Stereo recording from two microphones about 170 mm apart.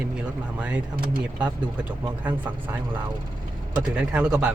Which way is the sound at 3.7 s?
5° right (ahead or behind).